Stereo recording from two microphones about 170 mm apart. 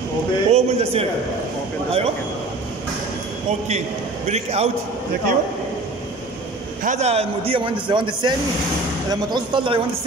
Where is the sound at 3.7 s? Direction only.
45° right (ahead or behind).